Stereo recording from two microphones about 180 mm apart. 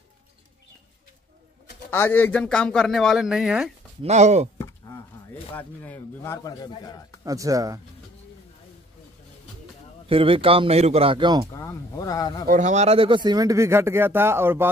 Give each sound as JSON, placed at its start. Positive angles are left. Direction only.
{"t": 1.9, "sound": "speech", "side_deg": 10}
{"t": 4.0, "sound": "speech", "side_deg": -40}
{"t": 5.5, "sound": "speech", "side_deg": 10}
{"t": 7.2, "sound": "a man's voice", "side_deg": -20}
{"t": 10.0, "sound": "a man's voice", "side_deg": -30}
{"t": 11.5, "sound": "speech", "side_deg": 20}
{"t": 12.4, "sound": "speech", "side_deg": -45}